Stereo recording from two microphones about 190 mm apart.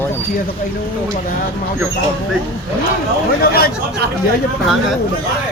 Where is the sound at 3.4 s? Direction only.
55° left (ahead or behind).